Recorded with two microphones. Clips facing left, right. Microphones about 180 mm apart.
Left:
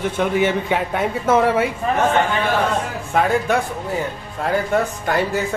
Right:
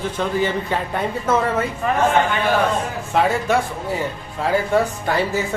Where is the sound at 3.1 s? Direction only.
Centre (ahead or behind).